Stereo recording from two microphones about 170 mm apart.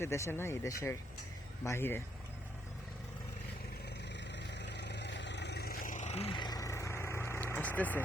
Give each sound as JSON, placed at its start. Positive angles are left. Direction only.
{"t": 0.0, "sound": "speech", "side_deg": 15}
{"t": 4.1, "sound": "vehicle", "side_deg": 90}